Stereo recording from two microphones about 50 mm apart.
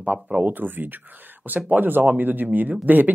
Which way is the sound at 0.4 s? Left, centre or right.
Right.